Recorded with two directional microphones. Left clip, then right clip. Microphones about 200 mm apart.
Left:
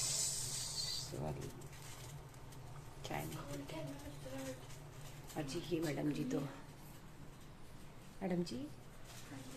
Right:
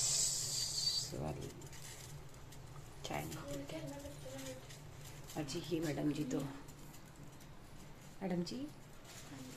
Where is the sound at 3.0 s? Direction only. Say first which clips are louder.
Right 2 dB; 5° right (ahead or behind).